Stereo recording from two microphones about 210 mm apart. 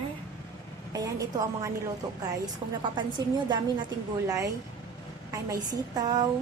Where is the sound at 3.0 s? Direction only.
20° right (ahead or behind).